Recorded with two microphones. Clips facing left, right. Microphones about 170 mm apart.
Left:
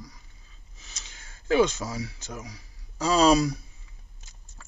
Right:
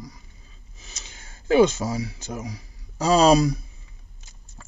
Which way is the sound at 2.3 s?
15° right (ahead or behind).